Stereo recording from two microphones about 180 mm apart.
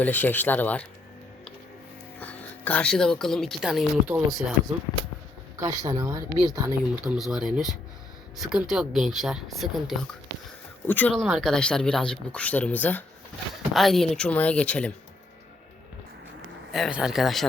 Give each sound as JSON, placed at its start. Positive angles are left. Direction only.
{"t": 0.0, "sound": "speech", "side_deg": 10}
{"t": 2.1, "sound": "a woman's voice", "side_deg": 10}
{"t": 5.5, "sound": "speech", "side_deg": -20}
{"t": 7.0, "sound": "speech", "side_deg": 0}
{"t": 10.8, "sound": "speech", "side_deg": 10}
{"t": 16.7, "sound": "speech", "side_deg": 0}